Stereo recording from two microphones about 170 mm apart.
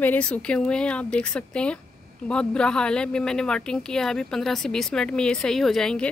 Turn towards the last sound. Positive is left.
turn(degrees=5)  # may be behind; listen again after turning